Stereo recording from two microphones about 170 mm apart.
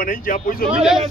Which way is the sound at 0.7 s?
5° right (ahead or behind).